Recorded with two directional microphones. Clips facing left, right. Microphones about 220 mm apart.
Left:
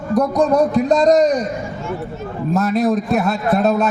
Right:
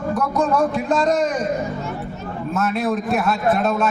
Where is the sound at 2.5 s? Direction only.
35° left (ahead or behind).